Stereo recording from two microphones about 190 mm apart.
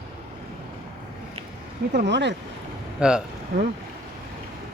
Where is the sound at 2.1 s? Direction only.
65° right (ahead or behind).